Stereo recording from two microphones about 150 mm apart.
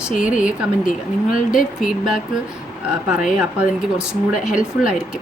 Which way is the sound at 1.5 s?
5° right (ahead or behind).